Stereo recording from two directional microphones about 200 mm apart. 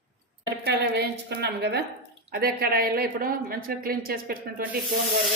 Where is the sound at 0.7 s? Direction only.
55° right (ahead or behind).